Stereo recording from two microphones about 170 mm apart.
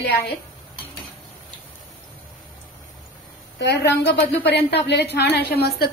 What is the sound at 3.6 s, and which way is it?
A woman's voice, 90° left.